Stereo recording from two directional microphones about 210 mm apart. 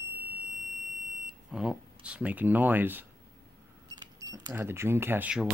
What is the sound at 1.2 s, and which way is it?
Speech, 5° right (ahead or behind).